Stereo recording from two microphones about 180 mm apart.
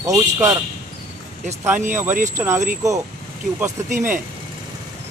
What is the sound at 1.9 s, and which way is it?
Speech, 10° right (ahead or behind).